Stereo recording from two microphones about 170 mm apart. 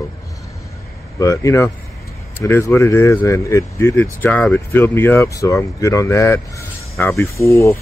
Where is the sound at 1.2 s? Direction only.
20° left (ahead or behind).